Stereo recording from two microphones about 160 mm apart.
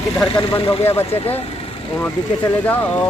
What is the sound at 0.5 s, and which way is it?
Speech, 35° left (ahead or behind).